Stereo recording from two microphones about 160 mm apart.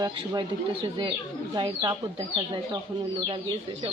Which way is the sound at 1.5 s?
25° right (ahead or behind).